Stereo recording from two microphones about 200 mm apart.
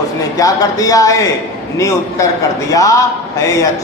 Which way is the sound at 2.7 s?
15° left (ahead or behind).